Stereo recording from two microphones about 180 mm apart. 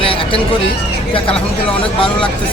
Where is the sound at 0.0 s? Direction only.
30° left (ahead or behind).